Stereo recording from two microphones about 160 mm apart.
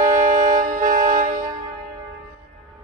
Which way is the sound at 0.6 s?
55° right (ahead or behind).